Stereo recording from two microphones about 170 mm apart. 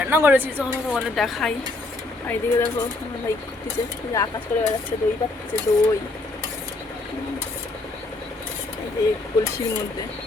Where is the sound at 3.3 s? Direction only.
15° left (ahead or behind).